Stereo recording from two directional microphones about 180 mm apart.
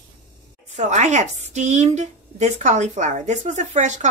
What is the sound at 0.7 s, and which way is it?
A woman's voice, 40° right (ahead or behind).